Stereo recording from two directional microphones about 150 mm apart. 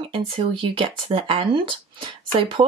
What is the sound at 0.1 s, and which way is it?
Speech, 35° right (ahead or behind).